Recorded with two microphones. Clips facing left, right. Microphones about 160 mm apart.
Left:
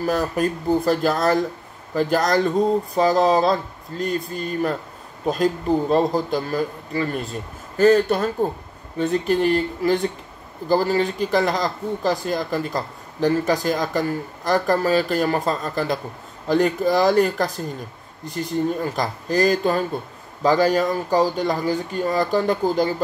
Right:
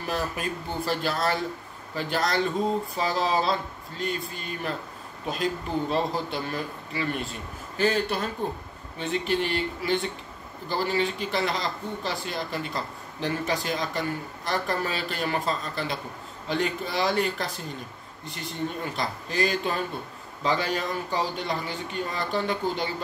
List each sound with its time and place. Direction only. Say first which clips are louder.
0.0 s a man's voice: left 9 dB; 40° left (ahead or behind)
18.9 s a man's voice: left 4 dB; 40° left (ahead or behind)